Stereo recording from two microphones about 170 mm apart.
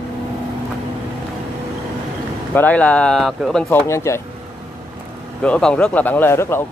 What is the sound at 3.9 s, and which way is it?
Speech, 15° left (ahead or behind).